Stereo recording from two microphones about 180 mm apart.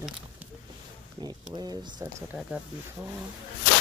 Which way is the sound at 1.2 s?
25° right (ahead or behind).